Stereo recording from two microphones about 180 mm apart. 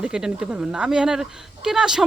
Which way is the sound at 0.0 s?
5° right (ahead or behind).